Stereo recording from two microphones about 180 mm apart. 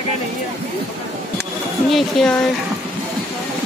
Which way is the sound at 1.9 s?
Centre (ahead or behind).